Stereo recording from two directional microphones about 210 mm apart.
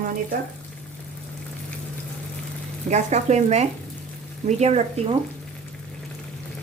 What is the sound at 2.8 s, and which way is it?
Speech, 35° right (ahead or behind).